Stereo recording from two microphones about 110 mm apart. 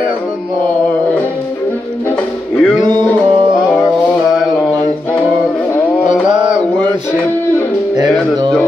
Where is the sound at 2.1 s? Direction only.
10° left (ahead or behind).